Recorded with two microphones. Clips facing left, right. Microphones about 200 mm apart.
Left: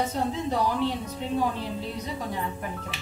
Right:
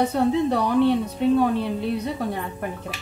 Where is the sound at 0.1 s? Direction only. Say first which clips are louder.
Right 7 dB; 65° right (ahead or behind).